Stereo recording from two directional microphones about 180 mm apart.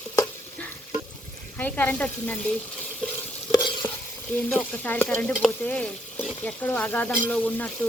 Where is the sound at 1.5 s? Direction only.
10° left (ahead or behind).